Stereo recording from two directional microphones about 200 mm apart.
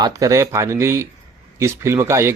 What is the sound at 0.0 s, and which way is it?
Speech, 15° right (ahead or behind).